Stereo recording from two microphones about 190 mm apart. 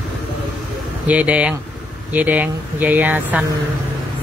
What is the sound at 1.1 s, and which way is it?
Speech, 5° right (ahead or behind).